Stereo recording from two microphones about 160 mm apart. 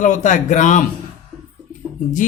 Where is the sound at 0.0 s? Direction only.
50° left (ahead or behind).